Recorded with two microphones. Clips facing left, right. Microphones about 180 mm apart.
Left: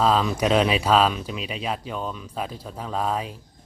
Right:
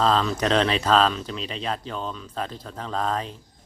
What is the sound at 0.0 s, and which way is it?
Speech, 10° left (ahead or behind).